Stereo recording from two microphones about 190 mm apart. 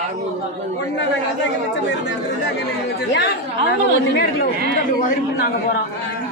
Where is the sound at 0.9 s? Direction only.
70° left (ahead or behind).